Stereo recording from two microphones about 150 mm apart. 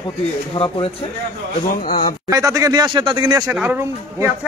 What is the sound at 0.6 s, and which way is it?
Speech, 35° left (ahead or behind).